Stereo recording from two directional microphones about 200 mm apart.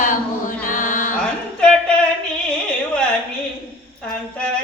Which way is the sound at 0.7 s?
40° left (ahead or behind).